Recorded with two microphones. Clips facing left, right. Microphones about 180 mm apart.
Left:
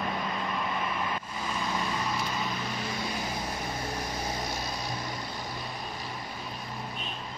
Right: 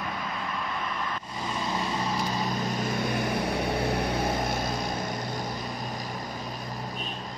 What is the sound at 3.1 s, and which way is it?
Vehicle, 60° right (ahead or behind).